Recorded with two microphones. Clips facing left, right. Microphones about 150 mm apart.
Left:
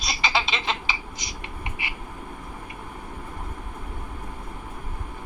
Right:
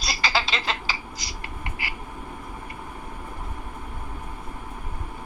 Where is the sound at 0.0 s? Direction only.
Centre (ahead or behind).